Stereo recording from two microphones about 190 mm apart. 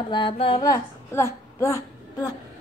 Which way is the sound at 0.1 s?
25° left (ahead or behind).